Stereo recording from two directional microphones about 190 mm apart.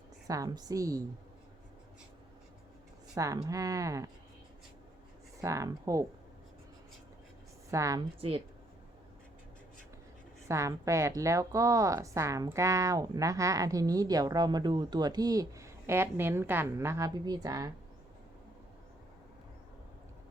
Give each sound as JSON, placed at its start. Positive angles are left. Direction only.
{"t": 0.3, "sound": "a woman's voice", "side_deg": -20}
{"t": 3.2, "sound": "a woman's voice", "side_deg": -20}
{"t": 5.4, "sound": "a woman's voice", "side_deg": -15}
{"t": 7.7, "sound": "a woman's voice", "side_deg": -15}
{"t": 8.2, "sound": "speech", "side_deg": -30}
{"t": 10.5, "sound": "a woman's voice", "side_deg": -15}